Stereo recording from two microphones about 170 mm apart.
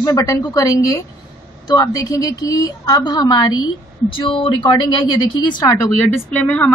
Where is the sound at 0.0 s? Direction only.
20° left (ahead or behind).